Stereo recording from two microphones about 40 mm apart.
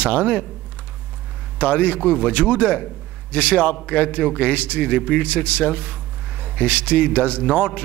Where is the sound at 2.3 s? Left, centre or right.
Left.